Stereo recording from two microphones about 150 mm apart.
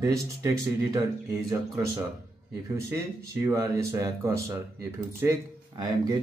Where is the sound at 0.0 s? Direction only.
20° right (ahead or behind).